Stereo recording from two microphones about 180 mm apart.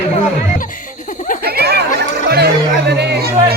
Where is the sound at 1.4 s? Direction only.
60° right (ahead or behind).